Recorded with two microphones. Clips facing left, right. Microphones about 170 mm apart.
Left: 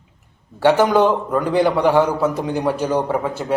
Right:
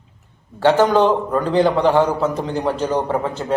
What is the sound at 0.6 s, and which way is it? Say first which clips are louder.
A man's voice: even; 10° left (ahead or behind).